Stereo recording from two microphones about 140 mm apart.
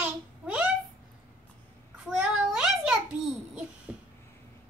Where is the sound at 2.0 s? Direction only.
5° right (ahead or behind).